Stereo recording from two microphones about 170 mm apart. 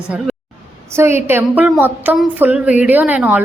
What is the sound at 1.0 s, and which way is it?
A woman's voice, 15° right (ahead or behind).